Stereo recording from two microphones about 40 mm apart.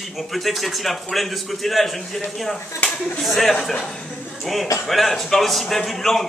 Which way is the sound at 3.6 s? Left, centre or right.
Centre.